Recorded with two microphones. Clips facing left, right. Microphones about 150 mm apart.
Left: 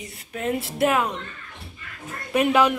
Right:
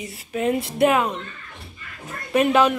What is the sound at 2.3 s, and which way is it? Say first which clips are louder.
Speech: right 2 dB; 10° left (ahead or behind).